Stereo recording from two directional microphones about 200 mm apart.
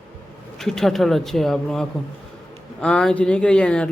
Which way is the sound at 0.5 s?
Centre (ahead or behind).